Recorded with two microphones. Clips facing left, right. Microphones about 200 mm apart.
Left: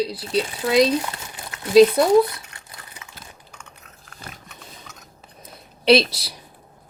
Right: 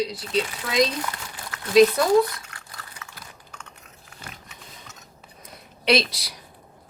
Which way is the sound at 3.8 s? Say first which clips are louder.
Left 2 dB; centre (ahead or behind).